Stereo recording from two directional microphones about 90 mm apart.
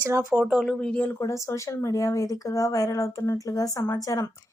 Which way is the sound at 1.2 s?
35° left (ahead or behind).